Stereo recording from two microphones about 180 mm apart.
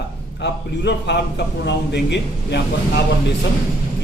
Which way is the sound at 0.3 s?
75° left (ahead or behind).